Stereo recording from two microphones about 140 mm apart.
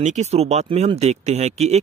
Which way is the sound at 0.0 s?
55° right (ahead or behind).